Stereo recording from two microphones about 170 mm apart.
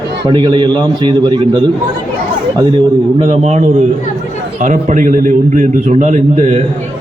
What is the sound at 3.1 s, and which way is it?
A man's voice, 40° right (ahead or behind).